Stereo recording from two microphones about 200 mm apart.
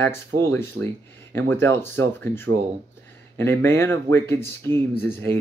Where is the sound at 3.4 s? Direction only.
10° left (ahead or behind).